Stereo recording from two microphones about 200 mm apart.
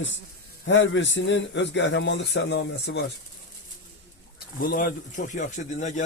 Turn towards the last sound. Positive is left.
turn(degrees=35)  # may be behind; listen again after turning